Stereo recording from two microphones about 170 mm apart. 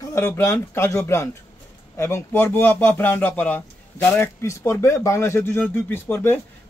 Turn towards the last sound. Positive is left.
turn(degrees=15)  # may be behind; listen again after turning